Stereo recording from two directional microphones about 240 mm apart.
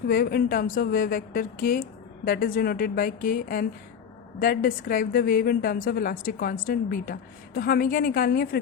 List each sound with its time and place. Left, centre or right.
0.1 s a woman's voice: left